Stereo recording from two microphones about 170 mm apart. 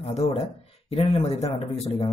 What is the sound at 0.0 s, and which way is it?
Speech, 35° left (ahead or behind).